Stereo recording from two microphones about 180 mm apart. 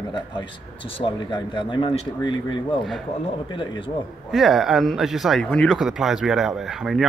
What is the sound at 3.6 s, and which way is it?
Speech, 30° left (ahead or behind).